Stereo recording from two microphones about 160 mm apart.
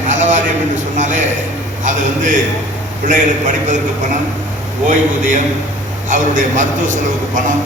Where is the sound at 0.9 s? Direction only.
50° right (ahead or behind).